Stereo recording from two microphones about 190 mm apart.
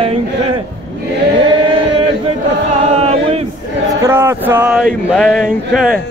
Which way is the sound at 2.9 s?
30° right (ahead or behind).